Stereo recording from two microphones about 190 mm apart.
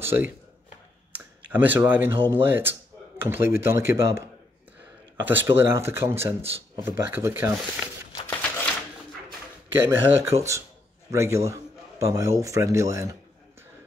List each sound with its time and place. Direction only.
0.0 s speech: 10° right (ahead or behind)
5.2 s speech: 10° right (ahead or behind)
8.2 s a sound: 10° left (ahead or behind)
9.8 s speech: 15° right (ahead or behind)